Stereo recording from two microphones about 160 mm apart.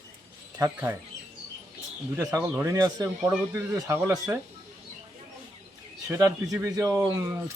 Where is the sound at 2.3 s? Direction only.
15° right (ahead or behind).